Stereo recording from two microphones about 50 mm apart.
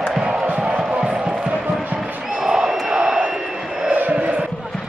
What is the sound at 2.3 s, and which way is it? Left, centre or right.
Crowd, centre.